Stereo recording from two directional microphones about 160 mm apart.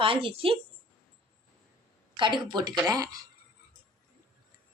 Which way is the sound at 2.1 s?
30° right (ahead or behind).